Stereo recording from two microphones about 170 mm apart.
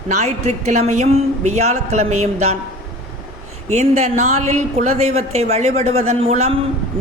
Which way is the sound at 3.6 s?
40° right (ahead or behind).